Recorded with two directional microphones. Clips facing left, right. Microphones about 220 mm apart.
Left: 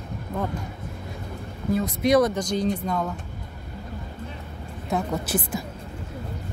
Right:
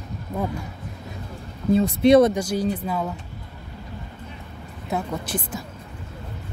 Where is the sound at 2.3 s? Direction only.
5° right (ahead or behind).